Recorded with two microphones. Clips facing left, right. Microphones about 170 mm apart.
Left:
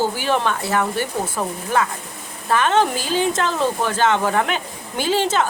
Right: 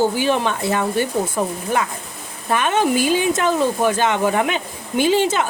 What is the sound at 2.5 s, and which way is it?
Speech, 15° right (ahead or behind).